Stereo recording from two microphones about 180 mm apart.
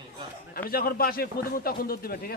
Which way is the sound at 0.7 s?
55° left (ahead or behind).